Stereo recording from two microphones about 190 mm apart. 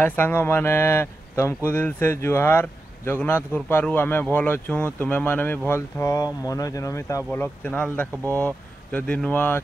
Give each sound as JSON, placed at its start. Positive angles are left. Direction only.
{"t": 0.0, "sound": "speech", "side_deg": 10}